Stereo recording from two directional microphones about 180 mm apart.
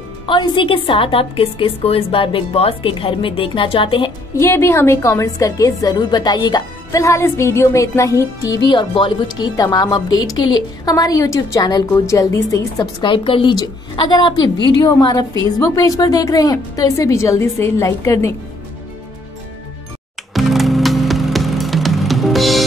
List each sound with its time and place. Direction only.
0.3 s a woman's voice: 25° left (ahead or behind)
4.4 s a woman's voice: 15° left (ahead or behind)
20.3 s music: centre (ahead or behind)